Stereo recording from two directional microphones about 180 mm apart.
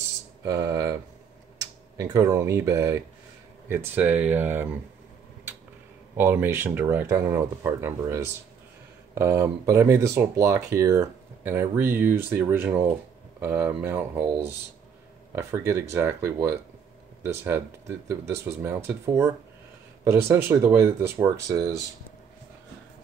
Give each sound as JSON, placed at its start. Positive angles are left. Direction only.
{"t": 0.5, "sound": "speech", "side_deg": -20}
{"t": 6.1, "sound": "speech", "side_deg": -10}
{"t": 15.3, "sound": "speech", "side_deg": -15}